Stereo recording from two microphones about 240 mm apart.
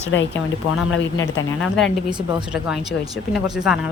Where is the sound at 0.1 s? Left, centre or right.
Left.